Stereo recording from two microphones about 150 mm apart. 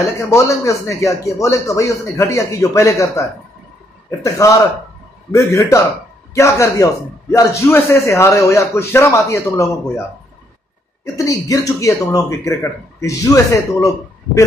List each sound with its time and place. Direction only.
0.3 s a man's voice: 20° left (ahead or behind)
11.1 s a man's voice: 20° left (ahead or behind)